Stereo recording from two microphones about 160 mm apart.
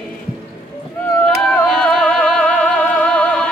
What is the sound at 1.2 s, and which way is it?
Music, 5° left (ahead or behind).